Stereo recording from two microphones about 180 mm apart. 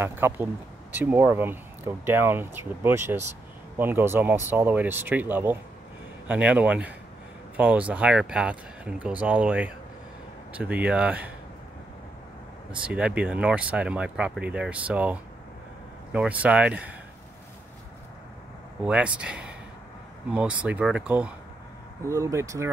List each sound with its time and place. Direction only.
0.0 s speech: 10° right (ahead or behind)
12.8 s speech: 5° right (ahead or behind)
18.9 s speech: 5° right (ahead or behind)